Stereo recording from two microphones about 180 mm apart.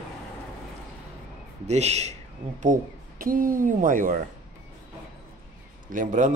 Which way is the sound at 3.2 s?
50° right (ahead or behind).